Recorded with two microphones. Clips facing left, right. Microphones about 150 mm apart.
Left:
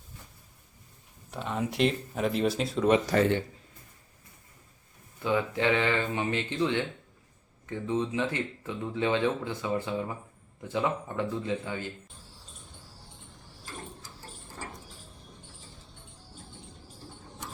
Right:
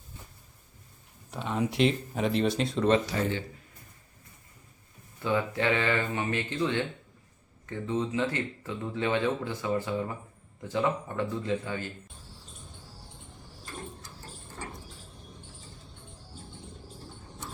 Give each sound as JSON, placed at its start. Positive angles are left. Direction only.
{"t": 1.3, "sound": "speech", "side_deg": 0}
{"t": 3.2, "sound": "speech", "side_deg": 65}
{"t": 5.2, "sound": "speech", "side_deg": 15}